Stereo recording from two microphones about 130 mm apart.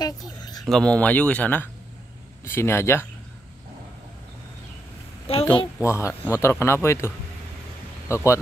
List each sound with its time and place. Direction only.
0.0 s a sound: 30° left (ahead or behind)
0.7 s speech: 5° left (ahead or behind)
5.3 s a woman's voice: 50° left (ahead or behind)
5.8 s speech: 20° left (ahead or behind)
8.1 s speech: 25° left (ahead or behind)